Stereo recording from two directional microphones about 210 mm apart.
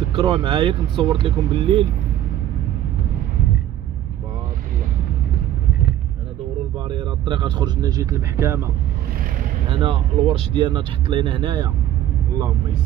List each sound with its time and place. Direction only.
0.1 s speech: 25° right (ahead or behind)
6.9 s speech: 25° right (ahead or behind)
9.7 s speech: 25° right (ahead or behind)